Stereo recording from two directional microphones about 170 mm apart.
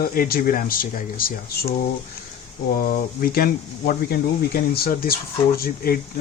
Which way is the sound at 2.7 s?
55° left (ahead or behind).